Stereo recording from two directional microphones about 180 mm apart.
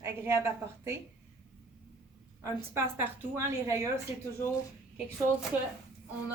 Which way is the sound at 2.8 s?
10° right (ahead or behind).